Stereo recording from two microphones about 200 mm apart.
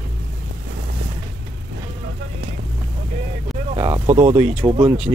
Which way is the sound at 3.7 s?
20° right (ahead or behind).